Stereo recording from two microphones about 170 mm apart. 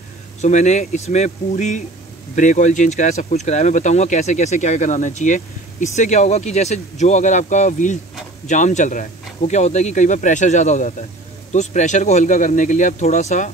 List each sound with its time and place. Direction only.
0.4 s speech: 45° left (ahead or behind)